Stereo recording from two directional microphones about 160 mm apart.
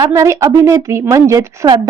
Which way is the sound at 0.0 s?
20° right (ahead or behind).